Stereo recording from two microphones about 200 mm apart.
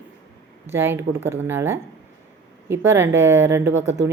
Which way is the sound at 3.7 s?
70° right (ahead or behind).